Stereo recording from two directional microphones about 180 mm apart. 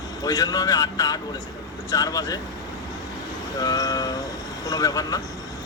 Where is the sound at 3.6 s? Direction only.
20° left (ahead or behind).